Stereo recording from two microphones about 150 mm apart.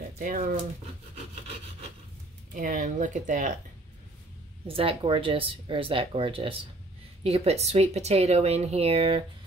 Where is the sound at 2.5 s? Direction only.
60° right (ahead or behind).